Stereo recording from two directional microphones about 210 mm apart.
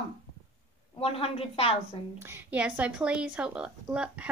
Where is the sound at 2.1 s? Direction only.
10° right (ahead or behind).